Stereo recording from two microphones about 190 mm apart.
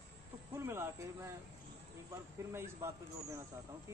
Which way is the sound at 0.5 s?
15° right (ahead or behind).